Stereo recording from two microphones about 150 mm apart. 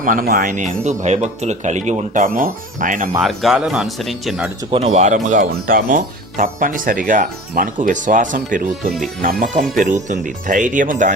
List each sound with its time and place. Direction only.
0.0 s speech: 65° right (ahead or behind)
3.2 s speech: centre (ahead or behind)
4.7 s speech: 45° right (ahead or behind)